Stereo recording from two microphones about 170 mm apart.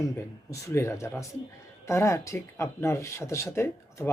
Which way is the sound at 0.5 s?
15° left (ahead or behind).